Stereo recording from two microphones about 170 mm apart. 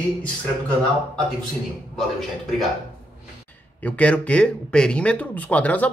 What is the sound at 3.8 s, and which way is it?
Speech, 10° left (ahead or behind).